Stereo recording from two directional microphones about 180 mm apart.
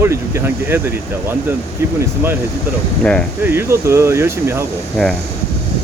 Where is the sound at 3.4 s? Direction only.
15° right (ahead or behind).